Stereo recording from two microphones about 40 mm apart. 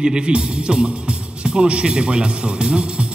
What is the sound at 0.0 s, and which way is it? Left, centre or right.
A woman's voice, right.